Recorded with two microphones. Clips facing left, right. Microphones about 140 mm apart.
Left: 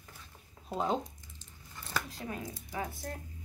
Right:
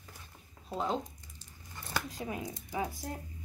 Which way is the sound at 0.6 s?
15° left (ahead or behind).